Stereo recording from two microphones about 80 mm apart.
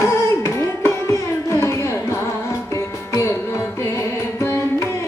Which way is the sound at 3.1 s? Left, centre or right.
Left.